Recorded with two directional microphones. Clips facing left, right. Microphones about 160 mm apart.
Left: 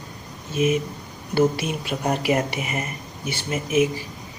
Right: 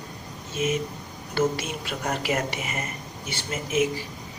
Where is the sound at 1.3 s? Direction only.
15° left (ahead or behind).